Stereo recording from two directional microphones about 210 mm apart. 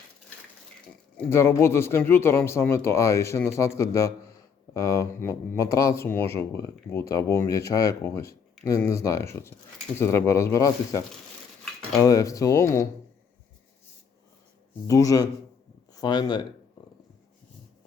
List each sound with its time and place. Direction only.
1.1 s speech: 10° left (ahead or behind)
12.0 s speech: 15° left (ahead or behind)
14.8 s speech: 15° left (ahead or behind)